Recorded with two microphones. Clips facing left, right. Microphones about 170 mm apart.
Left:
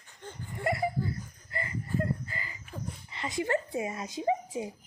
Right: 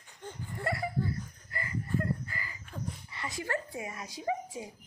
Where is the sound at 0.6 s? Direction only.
20° left (ahead or behind).